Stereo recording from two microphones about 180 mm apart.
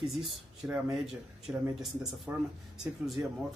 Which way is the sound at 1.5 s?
10° right (ahead or behind).